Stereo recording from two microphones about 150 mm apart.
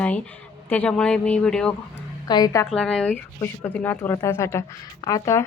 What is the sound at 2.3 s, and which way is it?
Speech, 25° left (ahead or behind).